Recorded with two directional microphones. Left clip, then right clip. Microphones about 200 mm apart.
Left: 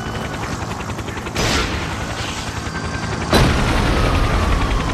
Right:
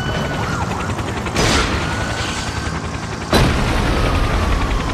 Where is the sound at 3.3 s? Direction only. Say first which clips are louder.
Even; centre (ahead or behind).